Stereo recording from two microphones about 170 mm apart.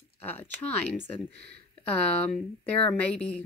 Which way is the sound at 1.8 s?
10° left (ahead or behind).